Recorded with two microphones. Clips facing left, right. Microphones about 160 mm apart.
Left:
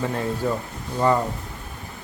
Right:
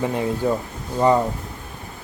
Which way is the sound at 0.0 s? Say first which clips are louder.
Right 3 dB; 15° right (ahead or behind).